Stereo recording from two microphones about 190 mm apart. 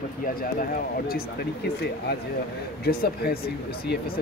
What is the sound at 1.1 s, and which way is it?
Speech, 60° left (ahead or behind).